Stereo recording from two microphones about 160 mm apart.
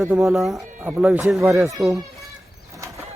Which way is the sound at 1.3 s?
Centre (ahead or behind).